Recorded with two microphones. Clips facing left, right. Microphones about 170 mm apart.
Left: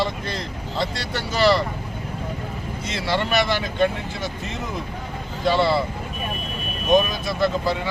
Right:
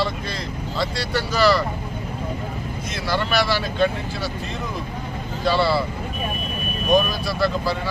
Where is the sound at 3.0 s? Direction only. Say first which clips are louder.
Even; 25° left (ahead or behind).